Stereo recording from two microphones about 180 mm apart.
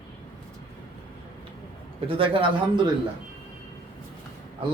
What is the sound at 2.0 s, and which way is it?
Speech, 30° right (ahead or behind).